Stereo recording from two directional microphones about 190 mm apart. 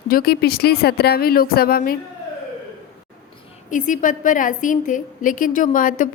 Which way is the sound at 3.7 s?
45° left (ahead or behind).